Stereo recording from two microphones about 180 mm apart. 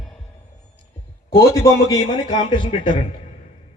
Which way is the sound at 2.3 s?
25° left (ahead or behind).